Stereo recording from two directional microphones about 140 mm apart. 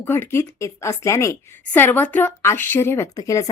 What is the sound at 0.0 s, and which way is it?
A woman's voice, 15° left (ahead or behind).